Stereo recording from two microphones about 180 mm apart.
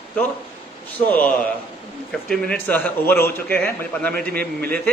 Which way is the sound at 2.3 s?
5° left (ahead or behind).